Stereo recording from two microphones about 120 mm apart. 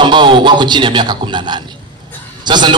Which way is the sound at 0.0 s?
40° right (ahead or behind).